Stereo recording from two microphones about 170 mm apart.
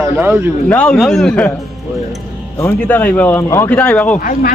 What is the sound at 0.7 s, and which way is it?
Speech, 5° left (ahead or behind).